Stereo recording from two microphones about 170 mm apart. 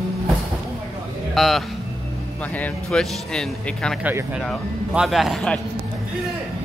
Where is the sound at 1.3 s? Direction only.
Centre (ahead or behind).